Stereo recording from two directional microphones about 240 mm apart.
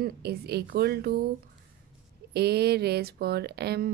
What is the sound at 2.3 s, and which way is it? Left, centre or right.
Speech, right.